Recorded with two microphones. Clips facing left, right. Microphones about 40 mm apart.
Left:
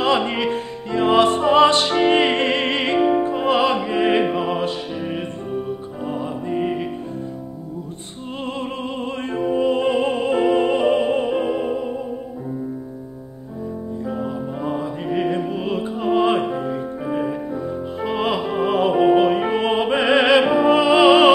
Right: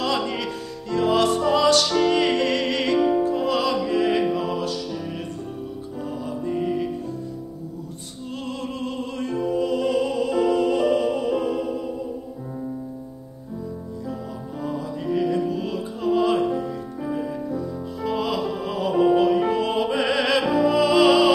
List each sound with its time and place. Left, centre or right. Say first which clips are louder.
0.0 s music: left 5 dB; left
8.5 s music: left 3 dB; left
14.0 s music: left 8 dB; left